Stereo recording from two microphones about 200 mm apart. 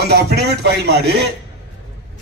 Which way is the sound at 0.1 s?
55° right (ahead or behind).